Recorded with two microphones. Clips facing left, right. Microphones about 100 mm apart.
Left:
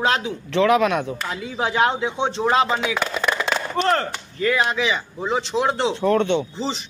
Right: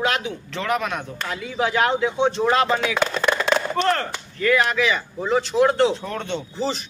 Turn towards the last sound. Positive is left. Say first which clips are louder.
# right 2 dB
turn(degrees=20)  # may be behind; listen again after turning